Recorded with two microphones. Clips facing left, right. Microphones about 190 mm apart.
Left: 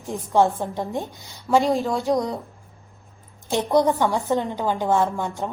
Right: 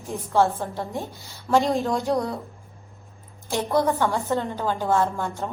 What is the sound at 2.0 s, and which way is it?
Speech, 15° left (ahead or behind).